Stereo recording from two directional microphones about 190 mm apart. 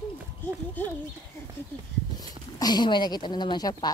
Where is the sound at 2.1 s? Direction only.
20° left (ahead or behind).